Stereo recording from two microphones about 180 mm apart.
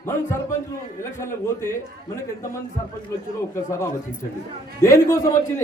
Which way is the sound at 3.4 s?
15° left (ahead or behind).